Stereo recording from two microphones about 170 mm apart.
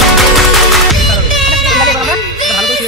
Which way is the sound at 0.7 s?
Centre (ahead or behind).